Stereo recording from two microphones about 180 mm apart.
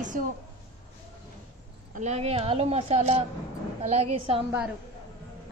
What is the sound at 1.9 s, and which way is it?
A woman's voice, 40° right (ahead or behind).